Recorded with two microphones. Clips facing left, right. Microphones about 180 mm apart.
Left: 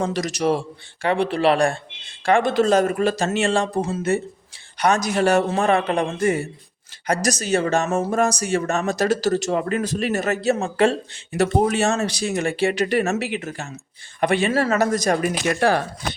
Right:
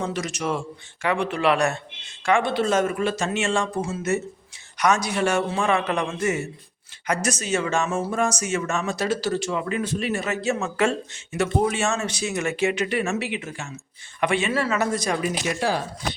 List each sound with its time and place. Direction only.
0.0 s a man's voice: 40° left (ahead or behind)
15.2 s speech: 60° left (ahead or behind)